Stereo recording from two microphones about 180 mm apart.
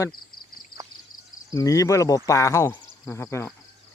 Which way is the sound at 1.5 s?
20° left (ahead or behind).